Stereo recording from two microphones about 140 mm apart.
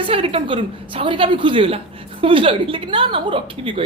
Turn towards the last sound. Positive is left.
turn(degrees=-40)  # may be behind; listen again after turning